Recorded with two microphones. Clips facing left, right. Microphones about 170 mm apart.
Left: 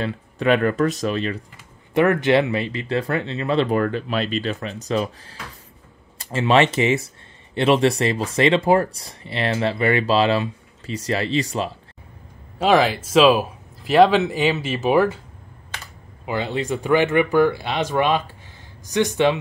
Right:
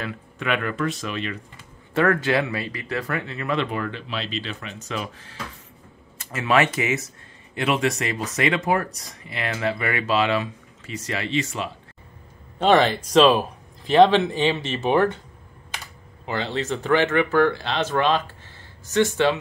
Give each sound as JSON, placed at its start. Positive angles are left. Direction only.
{"t": 0.0, "sound": "speech", "side_deg": 35}
{"t": 2.0, "sound": "speech", "side_deg": 20}
{"t": 3.7, "sound": "speech", "side_deg": 45}
{"t": 12.5, "sound": "speech", "side_deg": 5}
{"t": 16.3, "sound": "speech", "side_deg": 10}